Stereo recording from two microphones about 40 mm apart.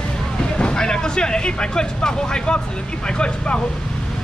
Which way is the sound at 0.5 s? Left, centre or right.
Left.